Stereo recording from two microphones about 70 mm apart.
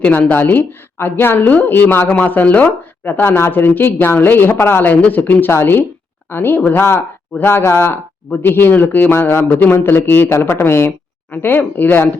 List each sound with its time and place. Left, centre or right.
0.0 s speech: left
10.2 s speech: left